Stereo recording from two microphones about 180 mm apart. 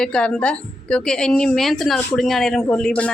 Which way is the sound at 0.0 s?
5° left (ahead or behind).